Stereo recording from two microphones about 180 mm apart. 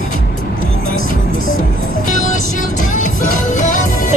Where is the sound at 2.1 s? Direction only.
45° left (ahead or behind).